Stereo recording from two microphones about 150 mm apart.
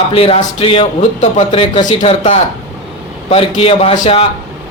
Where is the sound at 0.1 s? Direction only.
40° left (ahead or behind).